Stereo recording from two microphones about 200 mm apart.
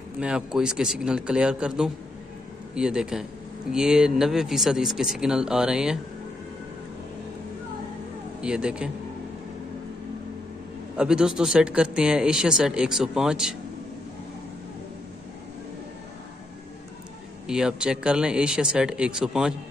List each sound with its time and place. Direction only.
0.2 s speech: 5° right (ahead or behind)
8.4 s speech: 5° right (ahead or behind)
11.0 s speech: 5° right (ahead or behind)
17.5 s speech: 5° right (ahead or behind)